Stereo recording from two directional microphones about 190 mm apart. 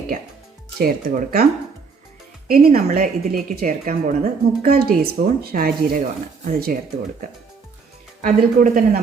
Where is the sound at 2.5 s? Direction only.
50° right (ahead or behind).